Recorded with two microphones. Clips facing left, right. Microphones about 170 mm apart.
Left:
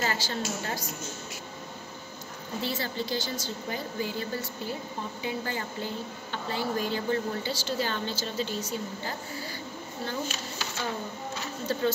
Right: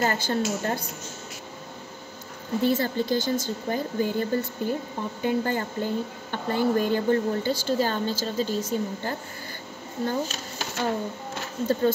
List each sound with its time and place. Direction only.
0.0 s speech: 50° right (ahead or behind)
2.6 s speech: 50° right (ahead or behind)